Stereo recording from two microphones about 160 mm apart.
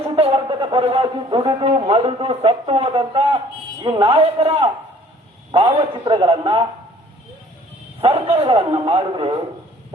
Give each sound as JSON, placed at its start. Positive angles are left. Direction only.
{"t": 0.0, "sound": "a man's voice", "side_deg": -35}
{"t": 8.0, "sound": "a man's voice", "side_deg": -35}